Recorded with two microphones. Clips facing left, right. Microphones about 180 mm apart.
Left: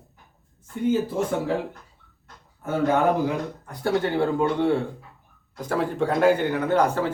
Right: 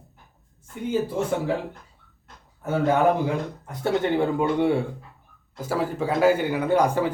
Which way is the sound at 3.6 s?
20° right (ahead or behind).